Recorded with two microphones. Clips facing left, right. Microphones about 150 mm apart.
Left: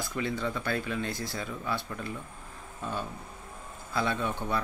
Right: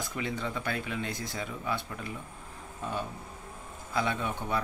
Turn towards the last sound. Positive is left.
turn(degrees=-15)  # may be behind; listen again after turning